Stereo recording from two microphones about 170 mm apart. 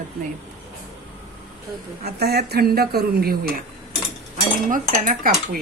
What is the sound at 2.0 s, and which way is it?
Speech, 70° right (ahead or behind).